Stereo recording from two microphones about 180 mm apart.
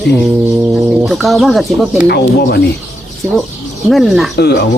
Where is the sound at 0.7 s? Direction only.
Centre (ahead or behind).